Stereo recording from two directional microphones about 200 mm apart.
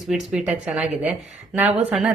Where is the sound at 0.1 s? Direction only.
5° right (ahead or behind).